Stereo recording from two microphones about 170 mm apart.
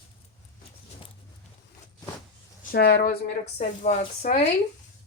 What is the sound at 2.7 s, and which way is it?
Speech, 65° left (ahead or behind).